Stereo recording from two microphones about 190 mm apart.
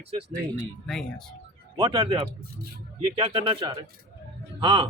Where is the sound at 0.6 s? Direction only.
5° left (ahead or behind).